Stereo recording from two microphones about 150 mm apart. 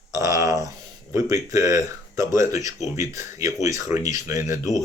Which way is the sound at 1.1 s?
20° right (ahead or behind).